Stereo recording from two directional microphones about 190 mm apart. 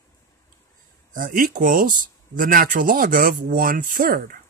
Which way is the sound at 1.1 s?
45° right (ahead or behind).